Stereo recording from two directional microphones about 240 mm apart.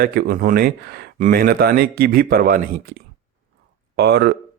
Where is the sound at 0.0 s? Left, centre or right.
Right.